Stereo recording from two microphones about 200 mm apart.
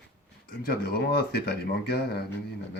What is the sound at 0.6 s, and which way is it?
Speech, 50° left (ahead or behind).